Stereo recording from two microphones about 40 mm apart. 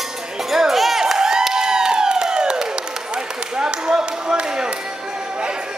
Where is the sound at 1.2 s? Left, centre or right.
Centre.